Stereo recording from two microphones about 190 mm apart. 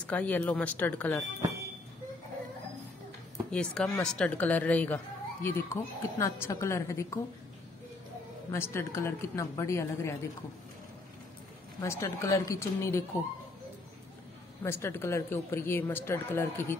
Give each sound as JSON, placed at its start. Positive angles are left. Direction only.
{"t": 0.0, "sound": "speech", "side_deg": 10}
{"t": 3.5, "sound": "speech", "side_deg": 5}
{"t": 8.5, "sound": "speech", "side_deg": 15}
{"t": 11.8, "sound": "speech", "side_deg": 15}
{"t": 14.6, "sound": "speech", "side_deg": 15}